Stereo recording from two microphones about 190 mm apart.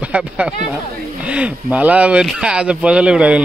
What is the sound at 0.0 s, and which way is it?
Speech, 5° right (ahead or behind).